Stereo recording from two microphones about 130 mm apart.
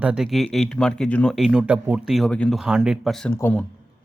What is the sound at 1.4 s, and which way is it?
Speech, 5° right (ahead or behind).